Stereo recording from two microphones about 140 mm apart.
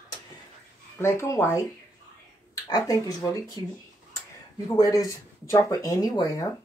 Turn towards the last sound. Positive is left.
turn(degrees=25)  # may be behind; listen again after turning